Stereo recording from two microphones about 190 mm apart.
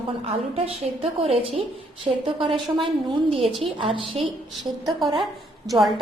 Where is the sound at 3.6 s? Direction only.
30° right (ahead or behind).